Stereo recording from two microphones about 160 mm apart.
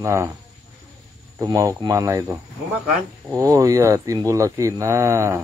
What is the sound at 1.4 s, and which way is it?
Speech, 20° right (ahead or behind).